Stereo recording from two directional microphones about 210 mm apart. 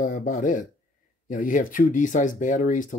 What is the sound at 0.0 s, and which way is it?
Speech, 40° left (ahead or behind).